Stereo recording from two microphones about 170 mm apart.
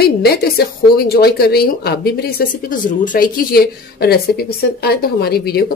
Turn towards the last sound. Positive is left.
turn(degrees=65)  # may be behind; listen again after turning